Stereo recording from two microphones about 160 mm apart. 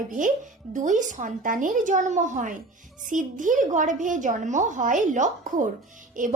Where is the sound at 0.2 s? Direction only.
55° right (ahead or behind).